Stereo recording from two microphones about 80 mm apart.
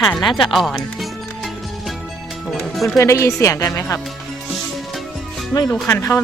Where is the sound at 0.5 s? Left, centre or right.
Centre.